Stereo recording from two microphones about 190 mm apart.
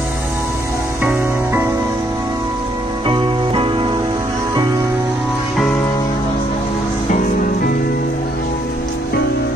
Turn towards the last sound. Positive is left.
turn(degrees=50)  # may be behind; listen again after turning